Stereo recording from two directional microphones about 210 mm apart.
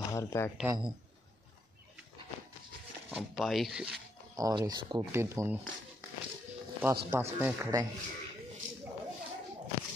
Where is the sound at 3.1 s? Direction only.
Centre (ahead or behind).